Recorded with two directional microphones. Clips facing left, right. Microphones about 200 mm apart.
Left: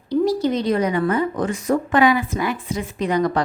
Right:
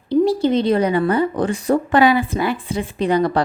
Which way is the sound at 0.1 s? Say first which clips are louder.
Right 3 dB; 25° right (ahead or behind).